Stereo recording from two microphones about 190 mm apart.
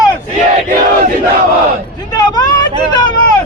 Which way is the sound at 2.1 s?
20° left (ahead or behind).